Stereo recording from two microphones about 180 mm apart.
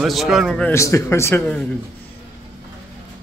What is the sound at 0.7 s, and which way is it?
Speech, 15° left (ahead or behind).